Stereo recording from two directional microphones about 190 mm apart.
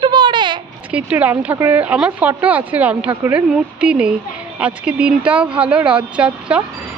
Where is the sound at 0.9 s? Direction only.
10° right (ahead or behind).